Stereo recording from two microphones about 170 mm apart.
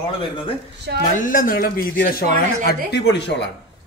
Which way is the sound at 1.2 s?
55° left (ahead or behind).